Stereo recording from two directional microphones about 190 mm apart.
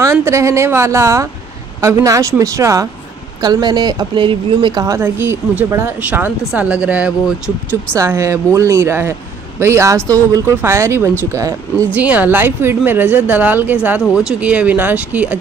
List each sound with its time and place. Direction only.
0.0 s speech: 15° right (ahead or behind)